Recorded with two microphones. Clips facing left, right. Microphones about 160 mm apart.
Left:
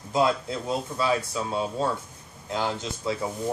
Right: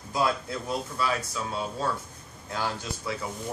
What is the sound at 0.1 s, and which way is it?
Speech, 25° left (ahead or behind).